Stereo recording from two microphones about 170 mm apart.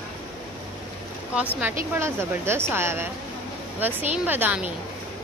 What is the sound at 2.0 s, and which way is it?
A woman's voice, 15° right (ahead or behind).